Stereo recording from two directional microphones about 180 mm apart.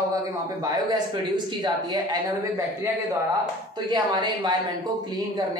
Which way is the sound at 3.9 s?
25° right (ahead or behind).